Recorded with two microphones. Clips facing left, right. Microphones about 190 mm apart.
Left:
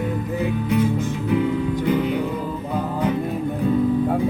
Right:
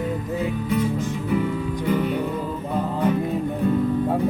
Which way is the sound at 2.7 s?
Centre (ahead or behind).